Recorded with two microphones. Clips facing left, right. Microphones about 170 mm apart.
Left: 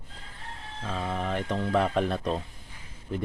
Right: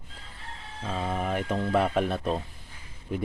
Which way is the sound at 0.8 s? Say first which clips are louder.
Right 1 dB; 10° right (ahead or behind).